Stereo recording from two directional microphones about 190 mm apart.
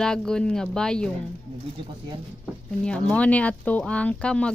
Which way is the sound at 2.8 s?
5° left (ahead or behind).